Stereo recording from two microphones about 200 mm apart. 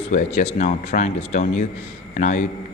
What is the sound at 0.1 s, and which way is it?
Speech, 35° left (ahead or behind).